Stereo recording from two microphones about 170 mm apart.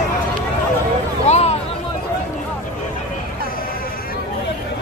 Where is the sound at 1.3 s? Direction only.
40° left (ahead or behind).